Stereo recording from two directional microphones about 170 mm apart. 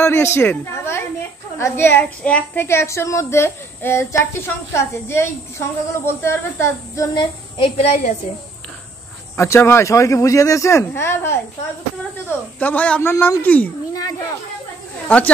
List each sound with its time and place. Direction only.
0.0 s a sound: 15° left (ahead or behind)
1.6 s a woman's voice: 10° left (ahead or behind)
7.2 s a child's voice: 30° left (ahead or behind)
9.4 s a woman's voice: 15° left (ahead or behind)
12.5 s a woman's voice: 10° left (ahead or behind)
15.1 s a woman's voice: 10° left (ahead or behind)